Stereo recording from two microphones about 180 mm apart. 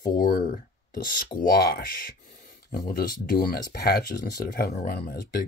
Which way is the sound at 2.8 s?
55° left (ahead or behind).